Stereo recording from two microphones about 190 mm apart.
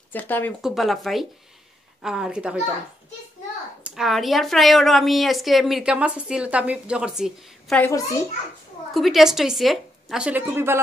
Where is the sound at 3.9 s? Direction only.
Centre (ahead or behind).